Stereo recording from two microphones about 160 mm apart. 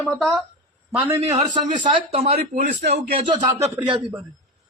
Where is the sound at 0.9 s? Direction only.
10° right (ahead or behind).